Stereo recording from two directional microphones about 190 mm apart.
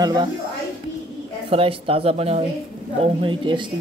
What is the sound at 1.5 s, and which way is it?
A woman's voice, 30° right (ahead or behind).